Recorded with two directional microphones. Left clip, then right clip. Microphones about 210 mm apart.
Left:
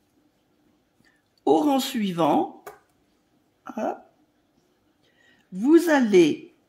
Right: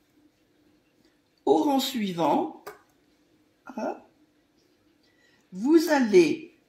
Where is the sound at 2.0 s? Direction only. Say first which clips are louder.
Left 3 dB; 80° left.